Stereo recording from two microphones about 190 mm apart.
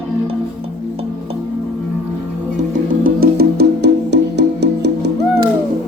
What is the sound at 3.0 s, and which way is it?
Music, 55° right (ahead or behind).